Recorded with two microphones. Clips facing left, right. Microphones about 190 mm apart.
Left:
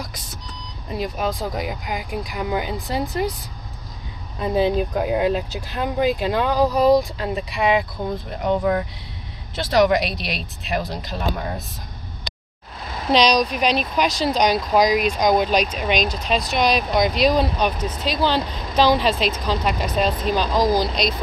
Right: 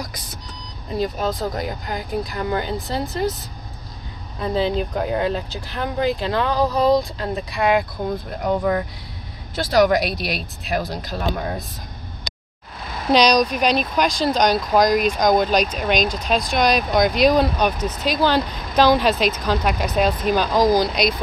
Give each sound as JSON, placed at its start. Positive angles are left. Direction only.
{"t": 0.9, "sound": "speech", "side_deg": 10}
{"t": 4.6, "sound": "speech", "side_deg": 15}
{"t": 13.1, "sound": "speech", "side_deg": 0}
{"t": 17.7, "sound": "speech", "side_deg": -45}
{"t": 18.1, "sound": "speech", "side_deg": 0}
{"t": 19.4, "sound": "speech", "side_deg": 0}